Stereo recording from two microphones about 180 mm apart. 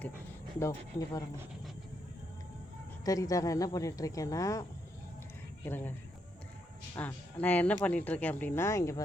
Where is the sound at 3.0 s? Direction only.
20° left (ahead or behind).